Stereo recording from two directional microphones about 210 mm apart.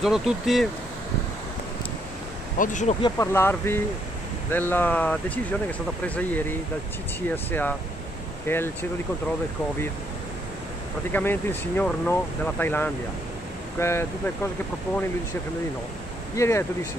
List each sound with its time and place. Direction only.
0.0 s speech: centre (ahead or behind)
2.6 s speech: 35° left (ahead or behind)
3.0 s speech: 15° left (ahead or behind)
11.1 s speech: 10° left (ahead or behind)
16.3 s speech: 15° left (ahead or behind)